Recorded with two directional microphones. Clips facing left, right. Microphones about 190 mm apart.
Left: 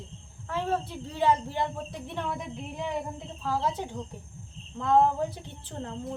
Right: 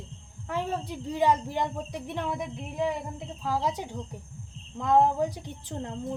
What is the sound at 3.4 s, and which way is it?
Speech, 10° right (ahead or behind).